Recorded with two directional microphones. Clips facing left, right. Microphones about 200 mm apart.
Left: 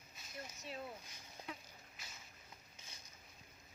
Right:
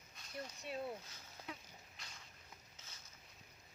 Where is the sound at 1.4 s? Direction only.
15° left (ahead or behind).